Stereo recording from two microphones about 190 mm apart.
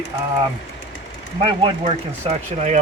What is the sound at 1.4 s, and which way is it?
Speech, 25° right (ahead or behind).